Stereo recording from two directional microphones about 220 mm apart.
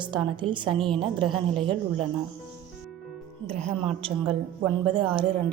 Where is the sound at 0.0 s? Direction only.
20° right (ahead or behind).